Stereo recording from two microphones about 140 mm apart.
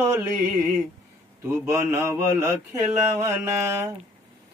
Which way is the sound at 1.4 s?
20° right (ahead or behind).